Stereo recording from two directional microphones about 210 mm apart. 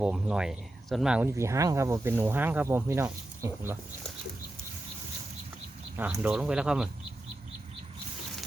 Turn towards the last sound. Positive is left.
turn(degrees=-5)  # may be behind; listen again after turning